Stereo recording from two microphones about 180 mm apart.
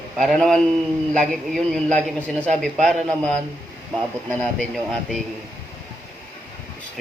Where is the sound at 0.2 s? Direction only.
Centre (ahead or behind).